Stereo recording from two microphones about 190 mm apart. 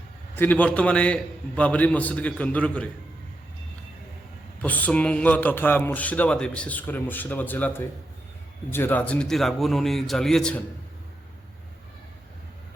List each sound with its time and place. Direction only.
0.3 s a man's voice: 10° left (ahead or behind)
4.6 s a man's voice: 10° left (ahead or behind)